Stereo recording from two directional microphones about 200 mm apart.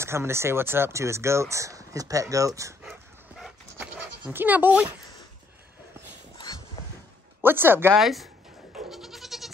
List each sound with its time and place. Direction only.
0.0 s speech: 15° right (ahead or behind)
2.8 s dog: centre (ahead or behind)
6.3 s a sound: 20° left (ahead or behind)
7.4 s speech: 10° right (ahead or behind)
8.7 s goat: centre (ahead or behind)